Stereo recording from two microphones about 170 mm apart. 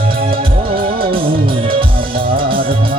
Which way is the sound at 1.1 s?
30° right (ahead or behind).